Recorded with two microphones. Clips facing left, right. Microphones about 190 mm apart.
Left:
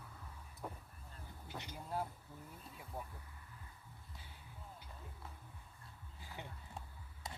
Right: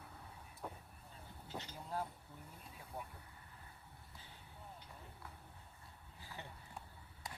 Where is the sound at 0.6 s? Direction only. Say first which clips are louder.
Left 1 dB; 5° left (ahead or behind).